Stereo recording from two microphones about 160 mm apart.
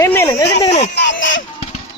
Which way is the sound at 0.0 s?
15° left (ahead or behind).